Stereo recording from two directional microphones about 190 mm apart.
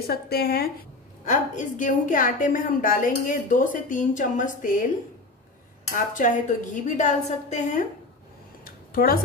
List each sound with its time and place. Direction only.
0.0 s speech: 55° left (ahead or behind)
1.2 s a woman's voice: 40° left (ahead or behind)
5.9 s a woman's voice: 45° left (ahead or behind)
8.6 s a sound: 50° left (ahead or behind)